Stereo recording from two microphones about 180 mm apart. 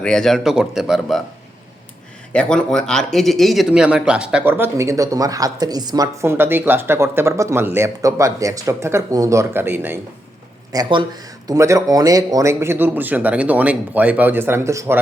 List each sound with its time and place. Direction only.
0.0 s speech: 5° left (ahead or behind)
2.3 s a man's voice: 5° left (ahead or behind); by 10.0 s 10° right (ahead or behind)
10.7 s a man's voice: 25° right (ahead or behind)